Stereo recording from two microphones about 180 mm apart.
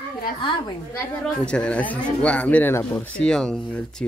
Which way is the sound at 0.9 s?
5° left (ahead or behind).